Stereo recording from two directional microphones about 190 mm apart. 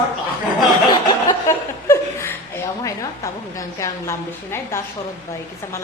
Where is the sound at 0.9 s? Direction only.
20° left (ahead or behind).